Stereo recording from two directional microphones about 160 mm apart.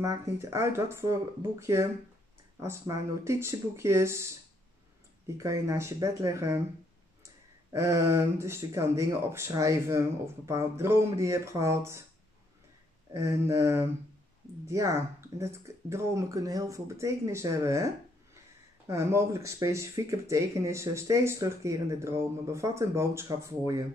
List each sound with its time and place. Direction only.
0.0 s speech: 20° right (ahead or behind)
3.3 s speech: 15° right (ahead or behind)
7.7 s speech: 20° right (ahead or behind)
13.1 s speech: 20° right (ahead or behind)